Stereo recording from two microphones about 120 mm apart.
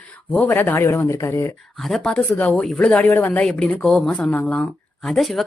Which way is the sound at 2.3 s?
15° left (ahead or behind).